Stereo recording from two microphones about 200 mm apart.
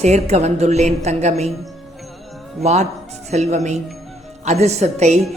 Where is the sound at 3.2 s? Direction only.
35° right (ahead or behind).